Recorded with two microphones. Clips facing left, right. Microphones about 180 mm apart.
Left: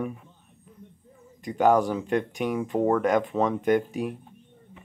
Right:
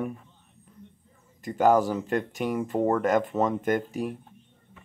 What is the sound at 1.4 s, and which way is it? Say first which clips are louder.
Speech: even; centre (ahead or behind).